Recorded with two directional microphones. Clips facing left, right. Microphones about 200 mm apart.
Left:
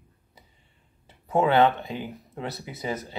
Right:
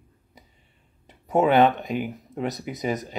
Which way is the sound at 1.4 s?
15° right (ahead or behind).